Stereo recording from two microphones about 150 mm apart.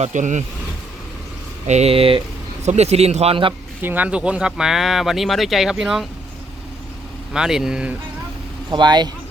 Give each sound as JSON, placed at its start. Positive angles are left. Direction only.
{"t": 0.0, "sound": "a man's voice", "side_deg": -55}
{"t": 1.6, "sound": "a man's voice", "side_deg": -45}
{"t": 3.8, "sound": "speech", "side_deg": -10}
{"t": 7.3, "sound": "speech", "side_deg": -5}
{"t": 8.7, "sound": "speech", "side_deg": -30}